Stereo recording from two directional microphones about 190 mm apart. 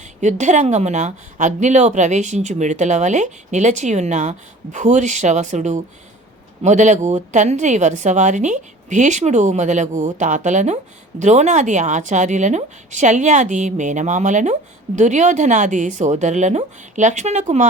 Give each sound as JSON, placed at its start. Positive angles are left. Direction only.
{"t": 0.0, "sound": "speech", "side_deg": -40}